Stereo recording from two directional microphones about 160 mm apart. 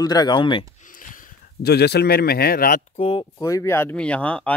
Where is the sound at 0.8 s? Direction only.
55° left (ahead or behind).